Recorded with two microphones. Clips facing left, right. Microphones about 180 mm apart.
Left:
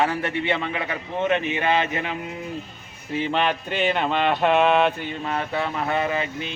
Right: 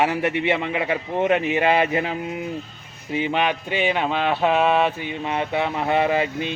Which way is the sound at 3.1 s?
10° right (ahead or behind).